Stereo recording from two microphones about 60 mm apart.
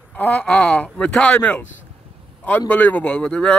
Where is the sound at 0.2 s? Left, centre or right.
Left.